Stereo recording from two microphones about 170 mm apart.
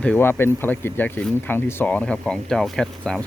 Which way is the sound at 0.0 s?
10° left (ahead or behind).